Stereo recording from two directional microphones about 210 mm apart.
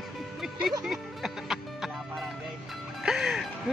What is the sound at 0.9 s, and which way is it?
Music, centre (ahead or behind).